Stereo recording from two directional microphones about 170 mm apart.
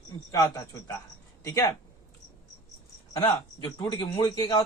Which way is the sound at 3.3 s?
30° left (ahead or behind).